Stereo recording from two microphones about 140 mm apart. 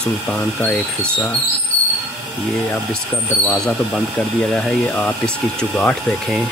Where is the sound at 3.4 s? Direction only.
5° left (ahead or behind).